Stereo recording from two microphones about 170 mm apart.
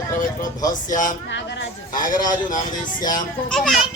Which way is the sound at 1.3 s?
90° left.